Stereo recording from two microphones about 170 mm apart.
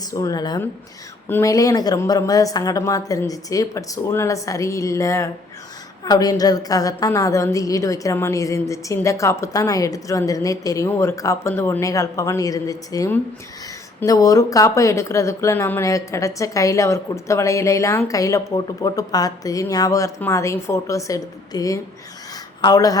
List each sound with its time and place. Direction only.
0.1 s a woman's voice: 20° left (ahead or behind)